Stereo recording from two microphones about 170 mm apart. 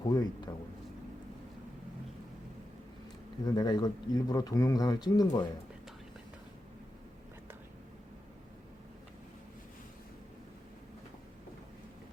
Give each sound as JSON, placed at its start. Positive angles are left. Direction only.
{"t": 0.0, "sound": "speech", "side_deg": 25}
{"t": 3.4, "sound": "speech", "side_deg": 20}